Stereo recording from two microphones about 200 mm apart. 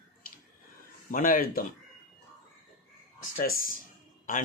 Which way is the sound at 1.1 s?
45° left (ahead or behind).